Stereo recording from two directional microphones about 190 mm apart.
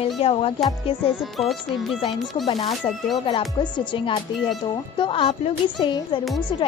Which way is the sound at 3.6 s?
25° left (ahead or behind).